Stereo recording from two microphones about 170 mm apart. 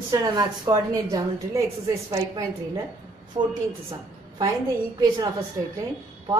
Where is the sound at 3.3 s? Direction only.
35° right (ahead or behind).